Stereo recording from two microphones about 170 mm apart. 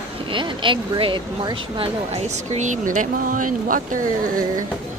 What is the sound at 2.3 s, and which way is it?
Speech, 45° right (ahead or behind).